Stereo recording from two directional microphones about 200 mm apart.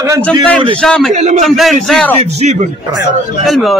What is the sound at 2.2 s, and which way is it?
Speech, 35° right (ahead or behind).